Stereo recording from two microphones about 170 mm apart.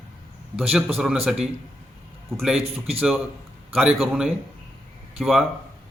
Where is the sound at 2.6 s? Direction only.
35° right (ahead or behind).